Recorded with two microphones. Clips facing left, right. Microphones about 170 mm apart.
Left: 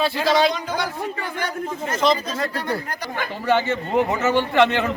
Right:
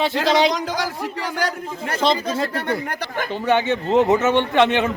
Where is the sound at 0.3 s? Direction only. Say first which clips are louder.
Right 1 dB; 20° right (ahead or behind).